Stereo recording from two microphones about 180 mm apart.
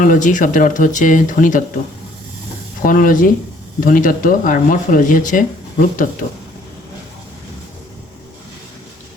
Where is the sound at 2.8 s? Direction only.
50° left (ahead or behind).